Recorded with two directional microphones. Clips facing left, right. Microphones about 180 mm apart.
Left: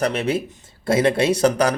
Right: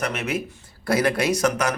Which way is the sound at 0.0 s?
30° left (ahead or behind).